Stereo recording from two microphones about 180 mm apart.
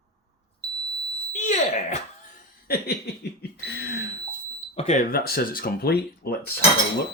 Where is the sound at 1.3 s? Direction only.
45° left (ahead or behind).